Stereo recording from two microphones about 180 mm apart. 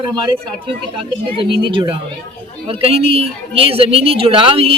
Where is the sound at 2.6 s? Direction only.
30° right (ahead or behind).